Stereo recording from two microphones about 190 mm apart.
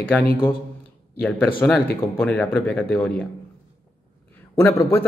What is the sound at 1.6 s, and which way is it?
Speech, 5° left (ahead or behind).